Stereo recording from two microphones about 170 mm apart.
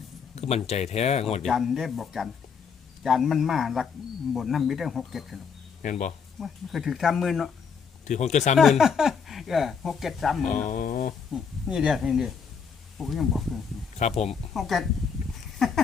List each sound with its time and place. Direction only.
0.3 s speech: 40° left (ahead or behind)
1.5 s speech: centre (ahead or behind)
5.8 s speech: 50° left (ahead or behind)
6.4 s speech: centre (ahead or behind)
8.0 s speech: 45° left (ahead or behind)
8.5 s speech: centre (ahead or behind)
10.5 s speech: 50° left (ahead or behind)
11.3 s speech: 5° right (ahead or behind)
14.0 s speech: 40° left (ahead or behind)
14.5 s speech: centre (ahead or behind)
15.5 s a sound: centre (ahead or behind)